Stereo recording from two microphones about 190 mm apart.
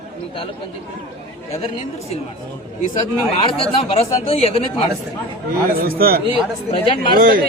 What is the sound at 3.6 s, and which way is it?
Speech, 30° left (ahead or behind).